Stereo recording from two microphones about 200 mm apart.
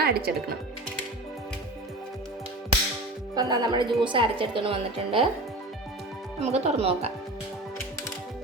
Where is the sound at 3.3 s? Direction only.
20° right (ahead or behind).